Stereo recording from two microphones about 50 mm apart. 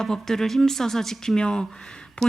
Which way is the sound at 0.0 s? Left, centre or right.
Centre.